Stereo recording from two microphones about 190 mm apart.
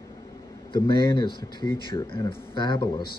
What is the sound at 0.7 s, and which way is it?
Speech, 25° left (ahead or behind).